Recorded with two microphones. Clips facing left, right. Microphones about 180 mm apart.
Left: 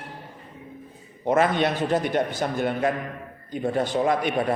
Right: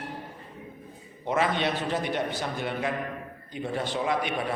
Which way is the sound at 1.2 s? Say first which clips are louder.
Left 5 dB; 50° left (ahead or behind).